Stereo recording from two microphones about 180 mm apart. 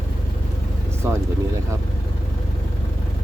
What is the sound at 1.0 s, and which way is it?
Speech, 10° right (ahead or behind).